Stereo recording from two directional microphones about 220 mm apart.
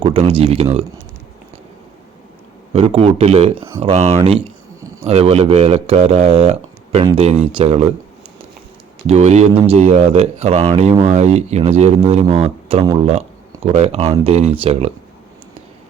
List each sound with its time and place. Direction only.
0.0 s speech: 25° right (ahead or behind)
2.7 s speech: 25° right (ahead or behind)
9.0 s speech: 30° right (ahead or behind)